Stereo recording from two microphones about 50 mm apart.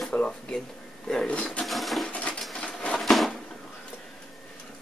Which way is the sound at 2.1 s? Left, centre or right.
Left.